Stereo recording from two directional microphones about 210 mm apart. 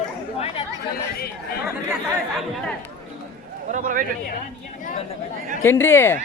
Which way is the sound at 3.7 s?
40° right (ahead or behind).